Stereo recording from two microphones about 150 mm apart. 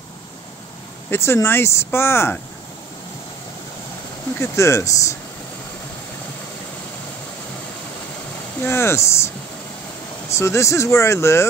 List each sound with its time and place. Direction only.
1.1 s speech: 15° left (ahead or behind)
4.4 s speech: 20° left (ahead or behind)
8.6 s speech: 15° left (ahead or behind)
10.3 s speech: 20° left (ahead or behind)